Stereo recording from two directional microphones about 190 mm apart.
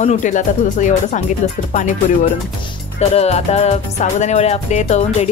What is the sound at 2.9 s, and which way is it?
Speech, 35° left (ahead or behind).